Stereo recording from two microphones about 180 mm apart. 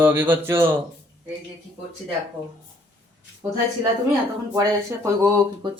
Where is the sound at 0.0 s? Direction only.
10° right (ahead or behind).